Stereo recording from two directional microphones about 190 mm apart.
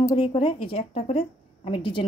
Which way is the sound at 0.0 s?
30° left (ahead or behind).